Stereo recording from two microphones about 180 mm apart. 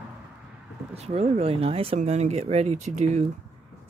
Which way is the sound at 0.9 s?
35° right (ahead or behind).